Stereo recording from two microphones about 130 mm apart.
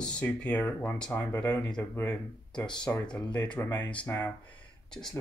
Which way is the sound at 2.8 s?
5° left (ahead or behind).